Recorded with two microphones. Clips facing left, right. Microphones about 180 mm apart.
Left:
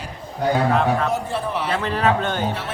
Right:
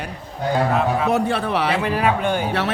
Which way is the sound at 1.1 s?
70° right (ahead or behind).